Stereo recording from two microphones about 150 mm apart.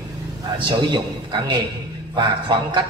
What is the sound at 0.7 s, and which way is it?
A man's voice, 30° right (ahead or behind).